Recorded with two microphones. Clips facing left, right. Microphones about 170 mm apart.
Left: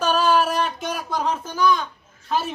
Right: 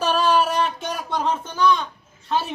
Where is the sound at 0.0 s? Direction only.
Centre (ahead or behind).